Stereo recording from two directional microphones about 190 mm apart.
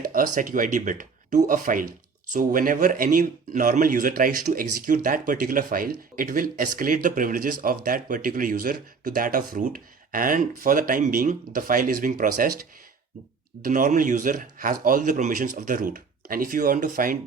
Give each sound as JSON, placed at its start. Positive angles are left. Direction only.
{"t": 0.0, "sound": "a sound", "side_deg": -45}
{"t": 0.3, "sound": "speech", "side_deg": -45}
{"t": 13.6, "sound": "speech", "side_deg": -45}